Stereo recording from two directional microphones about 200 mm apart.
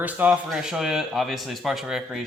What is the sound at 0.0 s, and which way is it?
Speech, 10° right (ahead or behind).